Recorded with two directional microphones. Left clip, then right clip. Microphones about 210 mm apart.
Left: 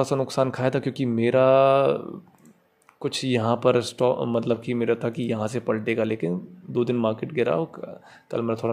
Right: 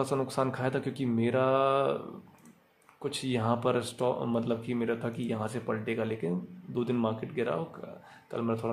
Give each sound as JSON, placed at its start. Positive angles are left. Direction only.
{"t": 0.0, "sound": "speech", "side_deg": 25}